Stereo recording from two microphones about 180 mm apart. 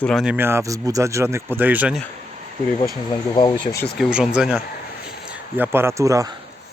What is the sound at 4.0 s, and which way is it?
Speech, centre (ahead or behind).